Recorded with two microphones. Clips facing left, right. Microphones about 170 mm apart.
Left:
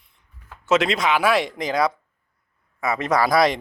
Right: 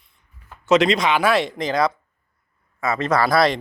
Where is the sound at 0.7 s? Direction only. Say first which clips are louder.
Right 3 dB; 5° left (ahead or behind).